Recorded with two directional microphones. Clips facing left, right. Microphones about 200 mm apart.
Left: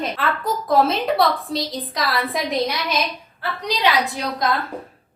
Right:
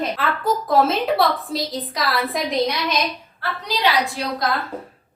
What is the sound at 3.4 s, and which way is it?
Speech, 20° left (ahead or behind).